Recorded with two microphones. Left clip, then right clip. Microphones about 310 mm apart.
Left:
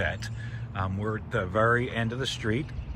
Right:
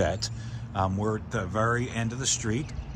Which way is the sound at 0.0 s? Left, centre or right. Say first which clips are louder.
Right 3 dB; centre.